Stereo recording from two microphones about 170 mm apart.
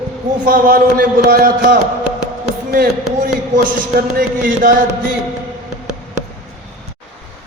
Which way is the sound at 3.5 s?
60° right (ahead or behind).